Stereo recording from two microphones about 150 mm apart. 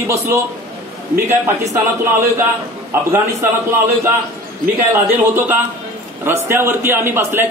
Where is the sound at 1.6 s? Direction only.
20° right (ahead or behind).